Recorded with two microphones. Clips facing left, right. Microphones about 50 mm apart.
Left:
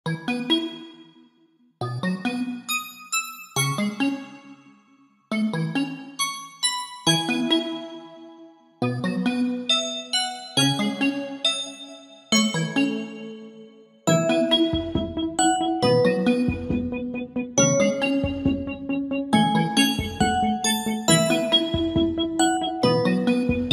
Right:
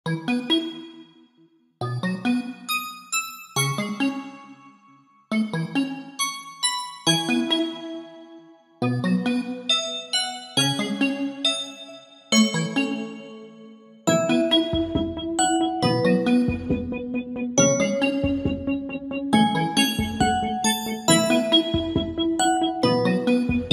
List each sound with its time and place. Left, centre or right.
0.0 s music: centre
1.8 s music: centre
5.3 s music: centre
14.0 s music: centre